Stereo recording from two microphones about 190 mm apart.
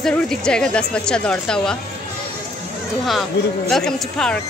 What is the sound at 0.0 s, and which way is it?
A woman's voice, 5° left (ahead or behind).